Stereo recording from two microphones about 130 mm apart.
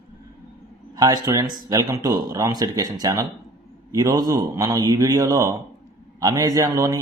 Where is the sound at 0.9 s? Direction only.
25° right (ahead or behind).